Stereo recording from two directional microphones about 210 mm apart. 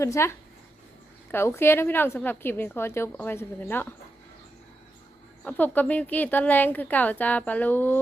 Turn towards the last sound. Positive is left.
turn(degrees=10)  # may be behind; listen again after turning